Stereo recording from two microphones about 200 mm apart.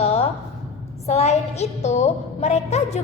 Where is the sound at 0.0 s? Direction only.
30° left (ahead or behind).